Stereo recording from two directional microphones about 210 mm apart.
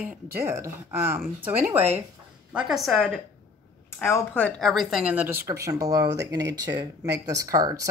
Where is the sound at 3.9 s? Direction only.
10° left (ahead or behind).